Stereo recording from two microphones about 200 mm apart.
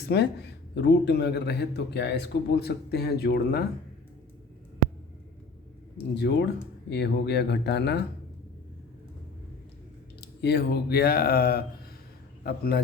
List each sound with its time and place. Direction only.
0.0 s speech: 55° left (ahead or behind)
6.1 s speech: 55° left (ahead or behind)
10.2 s a man's voice: 55° left (ahead or behind)